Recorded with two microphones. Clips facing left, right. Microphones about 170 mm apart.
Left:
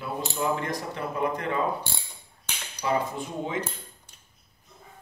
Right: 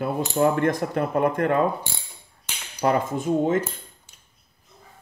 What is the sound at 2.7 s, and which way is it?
Speech, 50° right (ahead or behind).